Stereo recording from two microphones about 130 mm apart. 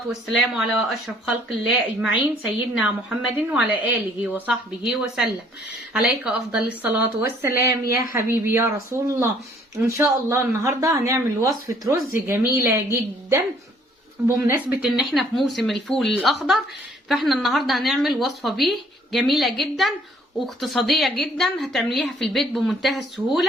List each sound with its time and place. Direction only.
0.1 s speech: centre (ahead or behind); by 14.7 s 20° right (ahead or behind)
14.8 s speech: centre (ahead or behind)